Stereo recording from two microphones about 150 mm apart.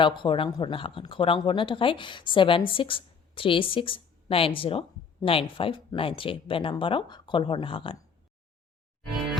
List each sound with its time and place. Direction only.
0.0 s a woman's voice: 35° left (ahead or behind)